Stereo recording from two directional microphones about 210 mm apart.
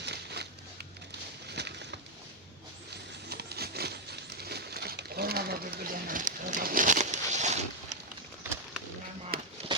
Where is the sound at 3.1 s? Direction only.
50° right (ahead or behind); by 7.9 s 35° right (ahead or behind).